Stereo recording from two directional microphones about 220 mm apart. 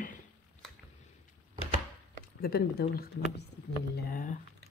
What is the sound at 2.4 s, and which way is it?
Speech, 45° left (ahead or behind).